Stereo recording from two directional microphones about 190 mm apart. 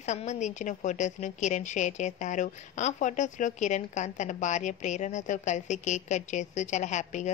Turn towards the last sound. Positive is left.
turn(degrees=40)  # may be behind; listen again after turning